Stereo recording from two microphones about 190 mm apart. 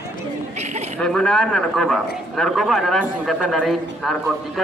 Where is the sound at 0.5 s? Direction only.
35° right (ahead or behind).